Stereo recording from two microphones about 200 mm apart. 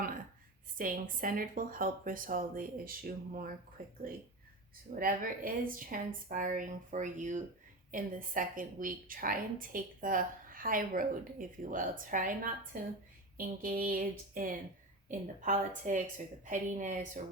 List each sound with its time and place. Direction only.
0.8 s a woman's voice: 45° right (ahead or behind)
4.9 s a woman's voice: 45° right (ahead or behind)